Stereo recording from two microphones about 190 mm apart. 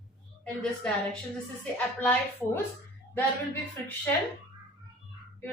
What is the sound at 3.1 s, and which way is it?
Speech, 10° left (ahead or behind).